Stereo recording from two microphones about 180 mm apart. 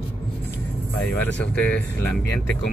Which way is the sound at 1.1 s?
10° left (ahead or behind).